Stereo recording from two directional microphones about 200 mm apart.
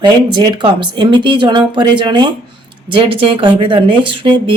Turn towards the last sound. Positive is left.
turn(degrees=-25)  # may be behind; listen again after turning